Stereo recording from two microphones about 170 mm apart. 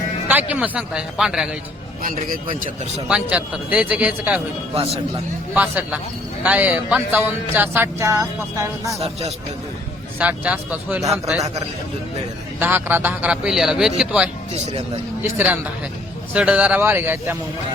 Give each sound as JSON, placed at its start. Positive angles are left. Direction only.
{"t": 0.3, "sound": "speech", "side_deg": -10}
{"t": 2.0, "sound": "speech", "side_deg": -50}
{"t": 3.1, "sound": "speech", "side_deg": -5}
{"t": 5.5, "sound": "speech", "side_deg": -10}
{"t": 9.0, "sound": "a man's voice", "side_deg": -40}
{"t": 10.2, "sound": "speech", "side_deg": -10}
{"t": 12.5, "sound": "speech", "side_deg": -10}